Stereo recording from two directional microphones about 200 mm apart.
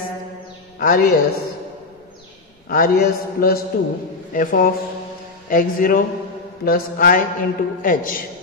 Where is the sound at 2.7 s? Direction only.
45° left (ahead or behind).